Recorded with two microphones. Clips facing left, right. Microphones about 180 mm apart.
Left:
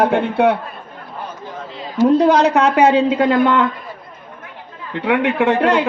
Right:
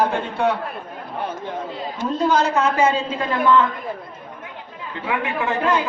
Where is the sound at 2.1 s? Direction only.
65° left (ahead or behind).